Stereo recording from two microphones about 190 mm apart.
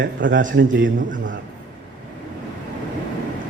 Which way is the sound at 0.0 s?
75° right (ahead or behind).